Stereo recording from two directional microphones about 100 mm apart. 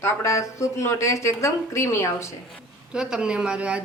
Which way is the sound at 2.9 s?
10° right (ahead or behind).